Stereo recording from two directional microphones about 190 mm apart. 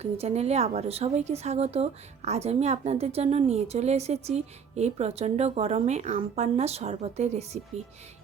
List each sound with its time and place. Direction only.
0.0 s a woman's voice: 35° right (ahead or behind)